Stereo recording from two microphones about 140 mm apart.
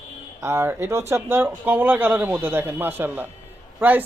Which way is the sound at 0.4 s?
15° right (ahead or behind).